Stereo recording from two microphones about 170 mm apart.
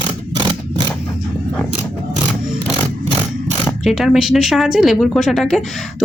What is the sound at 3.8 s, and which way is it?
Speech, centre (ahead or behind).